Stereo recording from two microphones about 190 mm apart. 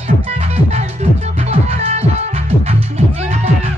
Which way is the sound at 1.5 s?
35° right (ahead or behind).